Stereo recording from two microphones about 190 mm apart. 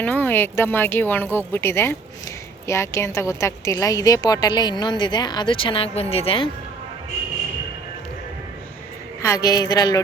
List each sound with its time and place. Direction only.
0.0 s a woman's voice: 10° left (ahead or behind); by 6.5 s 30° left (ahead or behind)
9.2 s a woman's voice: 20° left (ahead or behind)